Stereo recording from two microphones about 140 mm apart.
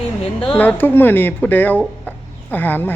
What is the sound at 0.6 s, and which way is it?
A woman's voice, 15° left (ahead or behind).